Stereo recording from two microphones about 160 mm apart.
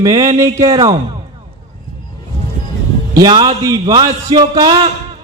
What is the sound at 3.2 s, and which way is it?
A man's voice, 25° right (ahead or behind).